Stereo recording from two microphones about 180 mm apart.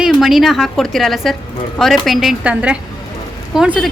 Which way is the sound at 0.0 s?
Centre (ahead or behind).